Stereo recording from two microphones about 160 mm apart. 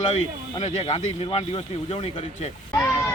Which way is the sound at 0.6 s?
40° left (ahead or behind).